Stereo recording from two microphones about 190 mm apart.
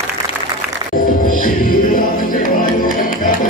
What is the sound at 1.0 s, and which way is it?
Music, 45° left (ahead or behind).